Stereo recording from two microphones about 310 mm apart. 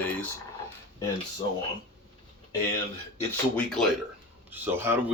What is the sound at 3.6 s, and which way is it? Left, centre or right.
Speech, centre.